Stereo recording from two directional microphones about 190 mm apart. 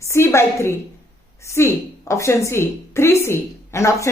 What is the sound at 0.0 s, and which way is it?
A woman's voice, 15° left (ahead or behind).